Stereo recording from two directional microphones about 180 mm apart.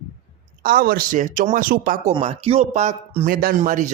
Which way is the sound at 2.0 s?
35° right (ahead or behind).